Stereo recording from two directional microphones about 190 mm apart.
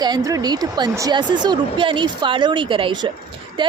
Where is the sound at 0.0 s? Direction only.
20° right (ahead or behind).